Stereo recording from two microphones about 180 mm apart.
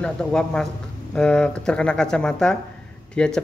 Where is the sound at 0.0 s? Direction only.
5° left (ahead or behind).